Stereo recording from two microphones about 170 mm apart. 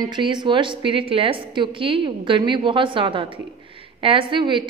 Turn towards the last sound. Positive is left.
turn(degrees=-30)  # may be behind; listen again after turning